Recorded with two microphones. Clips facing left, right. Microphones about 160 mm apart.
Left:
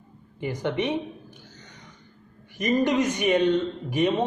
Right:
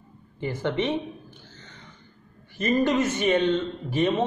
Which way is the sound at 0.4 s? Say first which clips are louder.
Even; 15° left (ahead or behind).